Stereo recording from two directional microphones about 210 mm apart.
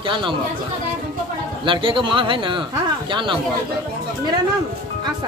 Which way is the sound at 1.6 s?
25° right (ahead or behind).